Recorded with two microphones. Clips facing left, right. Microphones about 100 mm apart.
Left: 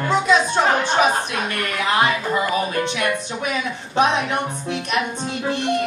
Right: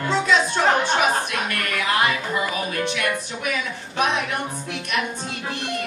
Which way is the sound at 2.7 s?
25° left (ahead or behind).